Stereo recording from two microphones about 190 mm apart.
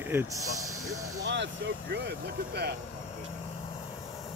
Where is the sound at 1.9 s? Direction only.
60° right (ahead or behind).